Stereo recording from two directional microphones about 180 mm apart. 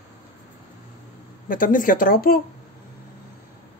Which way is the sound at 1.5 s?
50° left (ahead or behind).